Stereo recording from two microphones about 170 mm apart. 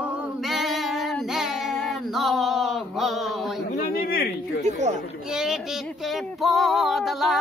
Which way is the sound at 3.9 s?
60° left (ahead or behind).